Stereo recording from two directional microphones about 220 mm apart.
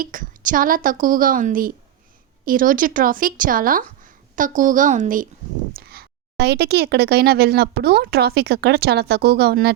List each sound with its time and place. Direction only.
0.0 s a woman's voice: 35° right (ahead or behind)